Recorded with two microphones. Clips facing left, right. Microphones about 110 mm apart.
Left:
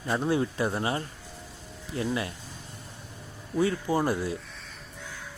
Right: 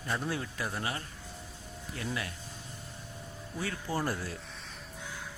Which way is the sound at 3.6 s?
20° left (ahead or behind).